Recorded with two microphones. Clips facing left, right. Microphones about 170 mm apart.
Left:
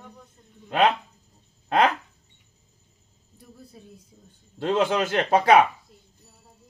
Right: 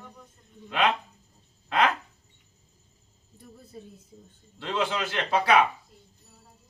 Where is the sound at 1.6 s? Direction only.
40° left (ahead or behind).